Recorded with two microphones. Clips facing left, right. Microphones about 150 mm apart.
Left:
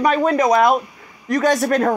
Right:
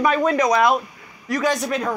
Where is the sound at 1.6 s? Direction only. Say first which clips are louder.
Left 6 dB; 50° left (ahead or behind).